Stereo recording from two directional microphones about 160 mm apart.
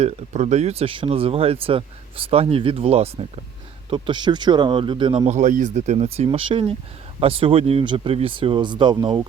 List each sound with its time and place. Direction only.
0.0 s speech: 45° right (ahead or behind)